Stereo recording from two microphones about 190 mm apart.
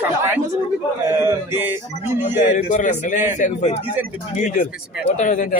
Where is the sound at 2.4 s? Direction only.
40° left (ahead or behind).